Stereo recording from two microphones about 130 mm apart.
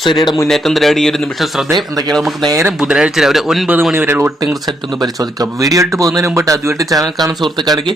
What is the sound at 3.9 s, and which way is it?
Speech, 15° right (ahead or behind).